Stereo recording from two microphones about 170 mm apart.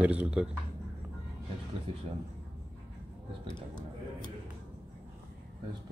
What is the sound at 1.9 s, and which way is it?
Speech, 30° right (ahead or behind).